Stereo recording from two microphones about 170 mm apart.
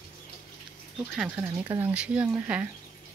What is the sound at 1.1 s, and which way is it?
Speech, 10° right (ahead or behind).